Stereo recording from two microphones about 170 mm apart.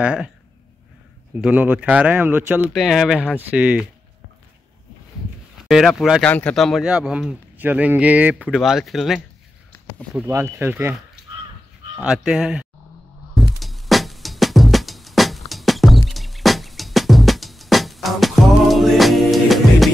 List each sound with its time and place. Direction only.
0.0 s speech: 5° right (ahead or behind)
1.4 s speech: 10° right (ahead or behind)
5.7 s speech: centre (ahead or behind)
10.1 s speech: 10° right (ahead or behind)
12.0 s speech: 5° right (ahead or behind)
13.3 s music: centre (ahead or behind)